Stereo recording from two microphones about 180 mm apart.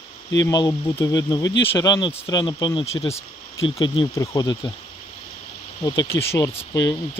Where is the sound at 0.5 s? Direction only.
25° left (ahead or behind).